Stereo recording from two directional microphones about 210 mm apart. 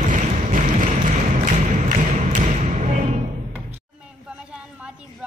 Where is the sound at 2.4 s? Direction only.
35° right (ahead or behind).